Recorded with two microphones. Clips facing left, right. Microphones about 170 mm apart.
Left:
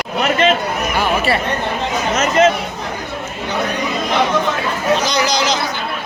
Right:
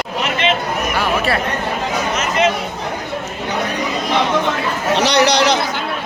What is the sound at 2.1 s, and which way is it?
Chatter, 45° left (ahead or behind).